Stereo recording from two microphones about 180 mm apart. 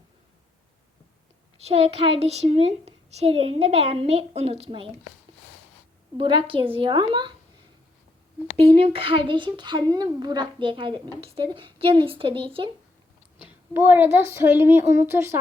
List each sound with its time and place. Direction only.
1.6 s a child's voice: 35° right (ahead or behind)
6.1 s a woman's voice: 30° right (ahead or behind)
8.6 s a woman's voice: 30° right (ahead or behind)
13.7 s a woman's voice: 10° right (ahead or behind)